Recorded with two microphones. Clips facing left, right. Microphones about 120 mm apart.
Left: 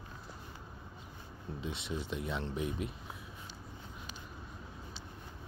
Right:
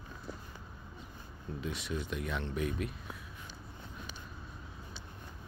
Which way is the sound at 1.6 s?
25° left (ahead or behind).